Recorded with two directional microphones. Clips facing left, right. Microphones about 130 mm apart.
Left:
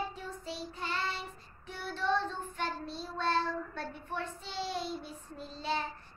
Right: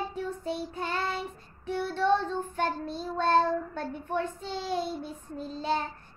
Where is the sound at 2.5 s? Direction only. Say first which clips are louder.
Right 7 dB; 50° right (ahead or behind).